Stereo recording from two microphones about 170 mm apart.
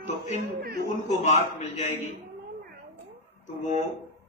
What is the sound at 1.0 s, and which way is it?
Speech, 45° left (ahead or behind).